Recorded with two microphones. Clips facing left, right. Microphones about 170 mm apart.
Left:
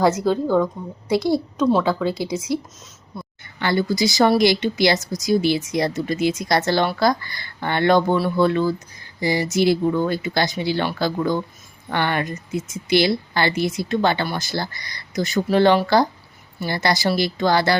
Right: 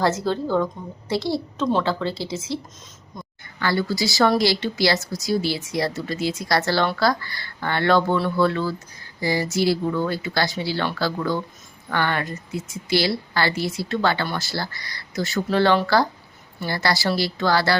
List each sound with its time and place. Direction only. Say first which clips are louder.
0.3 s speech: left 4 dB; 5° left (ahead or behind)
3.6 s speech: left 3 dB; 20° left (ahead or behind)